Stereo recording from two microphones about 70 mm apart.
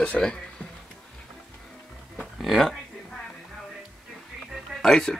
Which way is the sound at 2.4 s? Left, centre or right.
Centre.